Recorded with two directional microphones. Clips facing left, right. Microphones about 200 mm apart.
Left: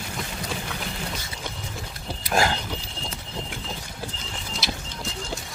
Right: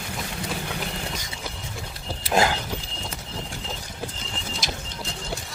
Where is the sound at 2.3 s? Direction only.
20° right (ahead or behind).